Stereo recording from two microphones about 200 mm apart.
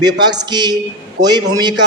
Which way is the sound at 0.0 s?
20° right (ahead or behind).